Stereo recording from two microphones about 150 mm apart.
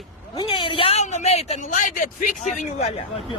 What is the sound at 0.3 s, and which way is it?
Speech, 35° left (ahead or behind).